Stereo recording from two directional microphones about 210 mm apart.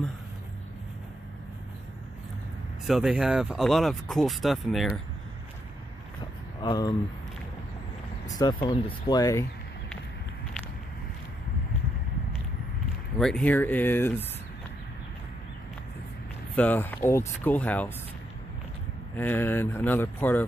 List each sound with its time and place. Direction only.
2.9 s speech: 5° right (ahead or behind)
6.6 s speech: 20° left (ahead or behind)
8.3 s speech: 20° left (ahead or behind)
13.2 s speech: 5° left (ahead or behind)
16.5 s speech: 10° left (ahead or behind)
19.1 s speech: 10° left (ahead or behind)